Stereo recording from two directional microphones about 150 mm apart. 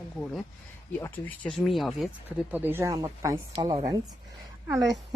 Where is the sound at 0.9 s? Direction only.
15° left (ahead or behind).